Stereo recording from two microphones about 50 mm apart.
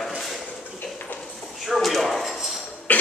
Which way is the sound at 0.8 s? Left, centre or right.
Left.